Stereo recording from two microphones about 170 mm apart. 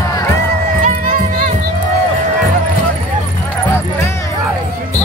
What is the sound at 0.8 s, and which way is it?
Music, 50° right (ahead or behind).